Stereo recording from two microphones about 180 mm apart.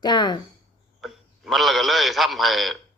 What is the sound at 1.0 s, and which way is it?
A man's voice, centre (ahead or behind).